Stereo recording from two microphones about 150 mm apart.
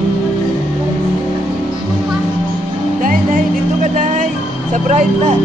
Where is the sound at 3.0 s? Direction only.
65° right (ahead or behind).